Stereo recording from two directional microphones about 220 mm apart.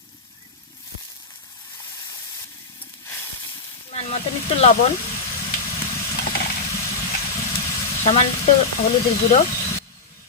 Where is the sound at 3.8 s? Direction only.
30° left (ahead or behind).